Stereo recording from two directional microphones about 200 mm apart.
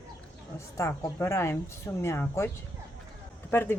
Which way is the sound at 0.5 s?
15° left (ahead or behind).